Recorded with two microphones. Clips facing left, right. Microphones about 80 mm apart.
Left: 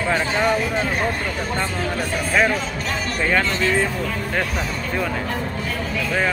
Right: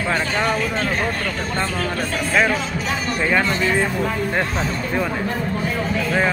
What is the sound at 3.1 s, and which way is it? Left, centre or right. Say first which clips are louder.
Speech: right 1 dB; centre.